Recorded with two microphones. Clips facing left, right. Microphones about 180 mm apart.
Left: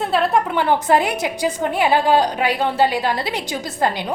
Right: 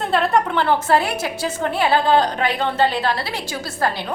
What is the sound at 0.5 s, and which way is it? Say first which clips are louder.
A woman's voice: left 1 dB; 15° left (ahead or behind).